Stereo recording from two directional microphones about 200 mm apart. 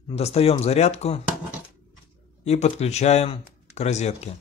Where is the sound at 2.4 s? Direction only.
30° left (ahead or behind).